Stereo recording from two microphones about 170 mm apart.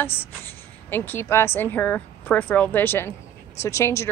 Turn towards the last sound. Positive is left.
turn(degrees=15)  # may be behind; listen again after turning